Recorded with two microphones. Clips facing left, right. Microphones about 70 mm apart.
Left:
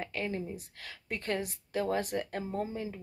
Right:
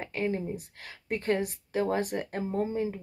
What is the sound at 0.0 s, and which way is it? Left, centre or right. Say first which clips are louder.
A woman's voice: right 5 dB; right.